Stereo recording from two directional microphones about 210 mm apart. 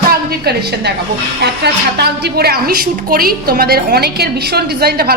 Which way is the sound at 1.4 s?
50° right (ahead or behind).